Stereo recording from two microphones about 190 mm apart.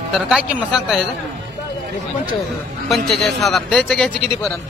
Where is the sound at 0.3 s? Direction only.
5° right (ahead or behind).